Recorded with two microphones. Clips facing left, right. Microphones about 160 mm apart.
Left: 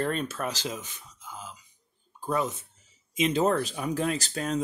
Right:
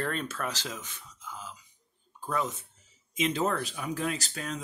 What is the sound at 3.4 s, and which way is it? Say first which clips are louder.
Speech: left 5 dB; 35° left (ahead or behind).